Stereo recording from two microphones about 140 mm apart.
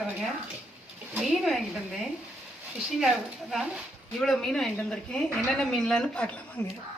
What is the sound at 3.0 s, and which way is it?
A woman's voice, centre (ahead or behind).